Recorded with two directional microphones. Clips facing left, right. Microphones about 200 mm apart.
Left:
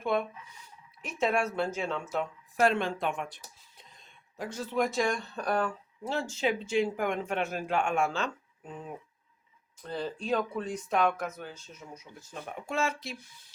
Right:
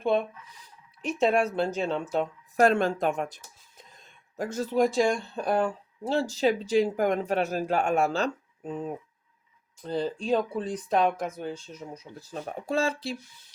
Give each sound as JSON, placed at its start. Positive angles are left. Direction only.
{"t": 0.6, "sound": "speech", "side_deg": -30}
{"t": 2.1, "sound": "speech", "side_deg": -45}
{"t": 9.8, "sound": "speech", "side_deg": -30}